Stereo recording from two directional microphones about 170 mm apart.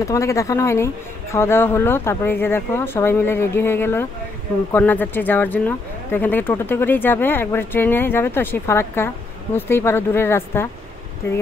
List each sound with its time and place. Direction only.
0.0 s speech: 20° left (ahead or behind)